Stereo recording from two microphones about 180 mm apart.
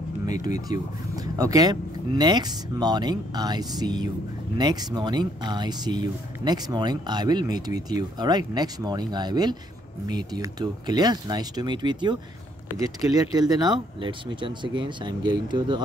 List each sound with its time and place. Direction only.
0.3 s speech: 20° right (ahead or behind)